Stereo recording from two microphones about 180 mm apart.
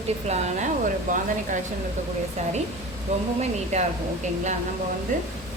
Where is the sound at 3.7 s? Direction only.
40° right (ahead or behind).